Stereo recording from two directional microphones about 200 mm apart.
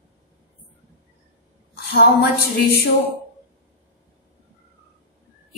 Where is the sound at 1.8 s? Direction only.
55° left (ahead or behind).